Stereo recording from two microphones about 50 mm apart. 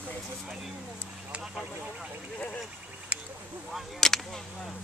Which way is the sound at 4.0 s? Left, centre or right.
Centre.